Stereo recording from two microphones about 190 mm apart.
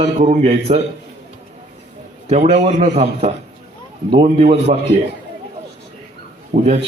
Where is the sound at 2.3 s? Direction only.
35° right (ahead or behind).